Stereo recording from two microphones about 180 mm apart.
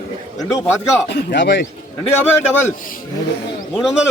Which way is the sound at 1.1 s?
70° left (ahead or behind).